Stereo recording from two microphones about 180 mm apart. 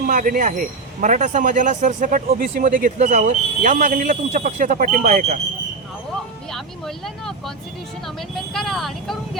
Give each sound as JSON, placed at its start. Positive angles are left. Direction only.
{"t": 0.0, "sound": "speech", "side_deg": -50}
{"t": 6.5, "sound": "speech", "side_deg": 0}
{"t": 8.5, "sound": "speech", "side_deg": 0}